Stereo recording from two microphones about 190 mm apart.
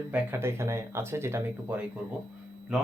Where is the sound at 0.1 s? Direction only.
10° right (ahead or behind).